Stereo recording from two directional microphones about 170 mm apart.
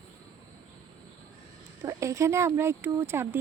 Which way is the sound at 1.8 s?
15° right (ahead or behind).